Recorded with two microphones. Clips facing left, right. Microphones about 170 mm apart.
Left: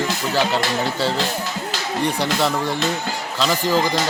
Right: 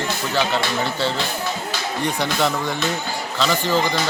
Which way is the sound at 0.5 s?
35° left (ahead or behind).